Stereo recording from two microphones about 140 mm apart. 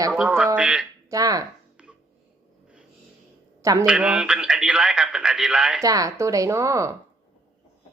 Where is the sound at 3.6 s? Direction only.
25° right (ahead or behind).